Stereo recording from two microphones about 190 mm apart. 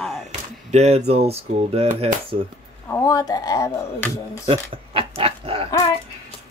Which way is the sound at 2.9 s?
15° left (ahead or behind).